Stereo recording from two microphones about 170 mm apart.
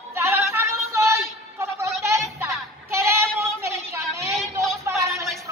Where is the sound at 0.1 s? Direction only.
15° right (ahead or behind).